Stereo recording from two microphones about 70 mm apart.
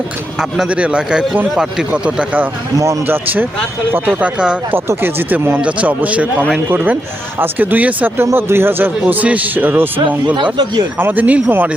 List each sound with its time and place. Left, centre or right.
0.7 s a man's voice: centre
3.9 s speech: right
4.7 s speech: right
5.6 s a man's voice: centre
8.2 s a man's voice: right
10.3 s speech: right
11.0 s a man's voice: right